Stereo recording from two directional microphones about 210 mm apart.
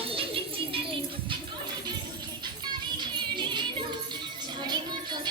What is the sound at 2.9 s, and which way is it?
Music, 20° right (ahead or behind).